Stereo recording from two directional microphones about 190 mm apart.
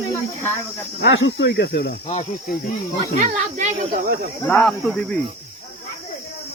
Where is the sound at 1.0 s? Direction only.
75° left (ahead or behind).